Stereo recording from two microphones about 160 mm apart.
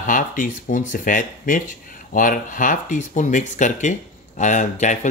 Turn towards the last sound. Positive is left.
turn(degrees=50)  # may be behind; listen again after turning